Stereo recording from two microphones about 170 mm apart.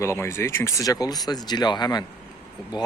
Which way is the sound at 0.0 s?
15° left (ahead or behind).